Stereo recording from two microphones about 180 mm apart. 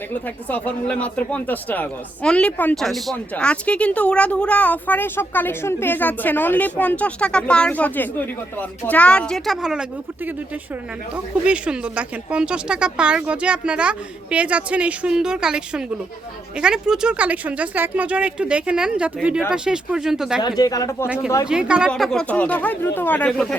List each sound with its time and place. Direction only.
0.1 s speech: 10° left (ahead or behind)
11.1 s speech: 5° right (ahead or behind)
20.6 s speech: 20° left (ahead or behind)
21.1 s speech: 5° right (ahead or behind)